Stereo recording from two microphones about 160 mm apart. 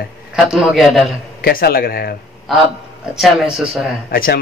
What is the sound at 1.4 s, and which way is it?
Speech, 70° left (ahead or behind).